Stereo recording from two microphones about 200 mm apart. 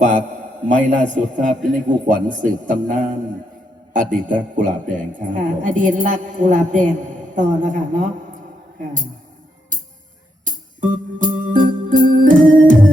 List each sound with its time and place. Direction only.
0.0 s a man's voice: 40° right (ahead or behind)
10.4 s organ: 40° right (ahead or behind)